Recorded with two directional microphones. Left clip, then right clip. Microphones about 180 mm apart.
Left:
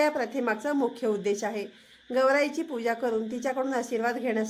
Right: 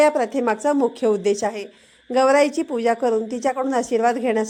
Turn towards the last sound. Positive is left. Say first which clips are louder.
# right 9 dB
turn(degrees=-40)  # may be behind; listen again after turning